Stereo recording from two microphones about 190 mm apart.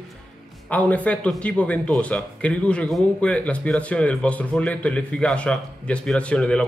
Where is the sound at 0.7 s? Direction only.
5° left (ahead or behind).